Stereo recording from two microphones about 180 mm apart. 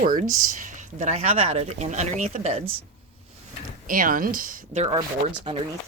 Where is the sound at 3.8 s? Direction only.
50° right (ahead or behind).